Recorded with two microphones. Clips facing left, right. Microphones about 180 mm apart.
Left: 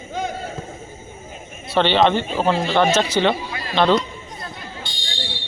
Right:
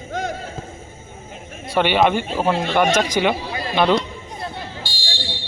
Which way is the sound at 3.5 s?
30° right (ahead or behind).